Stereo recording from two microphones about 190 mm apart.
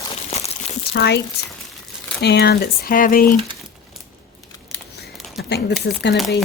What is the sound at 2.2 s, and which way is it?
Speech, 60° left (ahead or behind).